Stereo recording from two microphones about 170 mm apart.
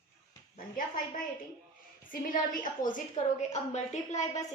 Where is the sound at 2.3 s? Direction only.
50° left (ahead or behind).